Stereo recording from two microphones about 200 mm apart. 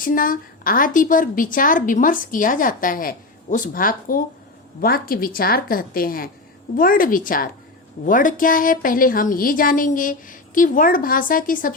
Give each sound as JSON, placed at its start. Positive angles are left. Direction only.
{"t": 0.0, "sound": "a woman's voice", "side_deg": 45}